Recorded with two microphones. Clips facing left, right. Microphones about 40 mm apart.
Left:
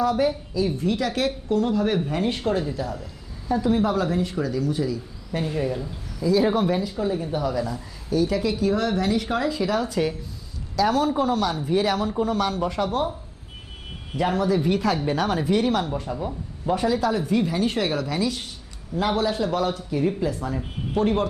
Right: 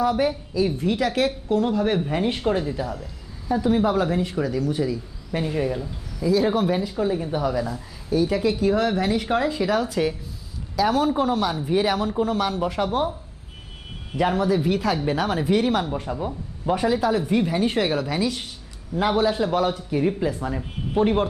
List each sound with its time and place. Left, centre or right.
0.0 s a woman's voice: centre
6.7 s a woman's voice: centre
14.2 s a woman's voice: centre